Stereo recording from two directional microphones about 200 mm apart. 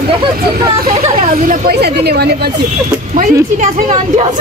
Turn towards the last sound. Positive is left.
turn(degrees=-35)  # may be behind; listen again after turning